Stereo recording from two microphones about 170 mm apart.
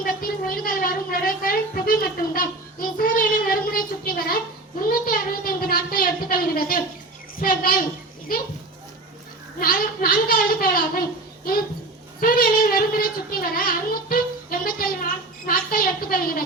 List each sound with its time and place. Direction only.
0.0 s a woman's voice: 60° left (ahead or behind)
9.6 s a woman's voice: 55° left (ahead or behind)
12.2 s a woman's voice: 55° left (ahead or behind)